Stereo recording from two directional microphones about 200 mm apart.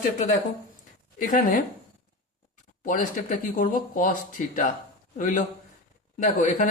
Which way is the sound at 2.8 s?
40° left (ahead or behind).